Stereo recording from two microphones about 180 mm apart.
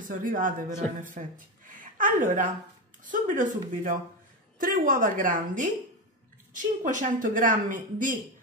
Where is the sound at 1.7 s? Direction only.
50° right (ahead or behind).